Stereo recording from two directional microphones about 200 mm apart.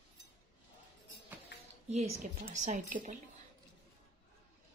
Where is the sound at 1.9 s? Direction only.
30° right (ahead or behind).